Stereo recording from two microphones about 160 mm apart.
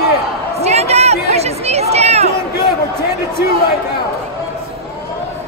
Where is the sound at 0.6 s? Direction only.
40° right (ahead or behind).